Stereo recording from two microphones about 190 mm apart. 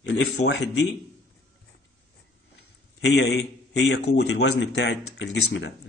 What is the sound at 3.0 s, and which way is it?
A man's voice, 75° left (ahead or behind).